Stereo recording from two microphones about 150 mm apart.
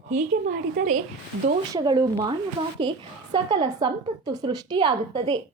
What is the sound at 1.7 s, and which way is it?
A woman's voice, 25° right (ahead or behind).